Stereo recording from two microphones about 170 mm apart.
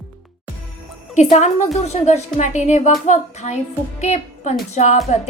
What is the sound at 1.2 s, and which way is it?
A woman's voice, 40° left (ahead or behind).